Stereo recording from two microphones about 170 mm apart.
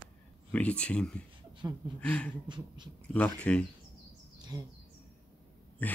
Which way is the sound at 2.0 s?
5° left (ahead or behind).